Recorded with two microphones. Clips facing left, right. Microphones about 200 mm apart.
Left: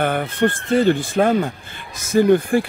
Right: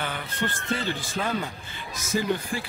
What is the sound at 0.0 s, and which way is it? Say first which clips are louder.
Speech: left 12 dB; 55° left (ahead or behind).